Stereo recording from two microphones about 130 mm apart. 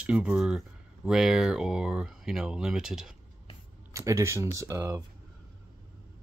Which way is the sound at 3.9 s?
25° right (ahead or behind).